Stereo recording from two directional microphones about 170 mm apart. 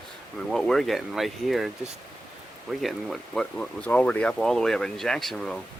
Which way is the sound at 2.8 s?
Centre (ahead or behind).